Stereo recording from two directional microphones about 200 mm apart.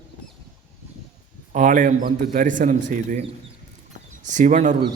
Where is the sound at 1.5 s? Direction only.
40° right (ahead or behind).